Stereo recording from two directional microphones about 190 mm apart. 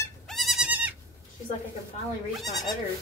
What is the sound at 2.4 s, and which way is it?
Speech, centre (ahead or behind).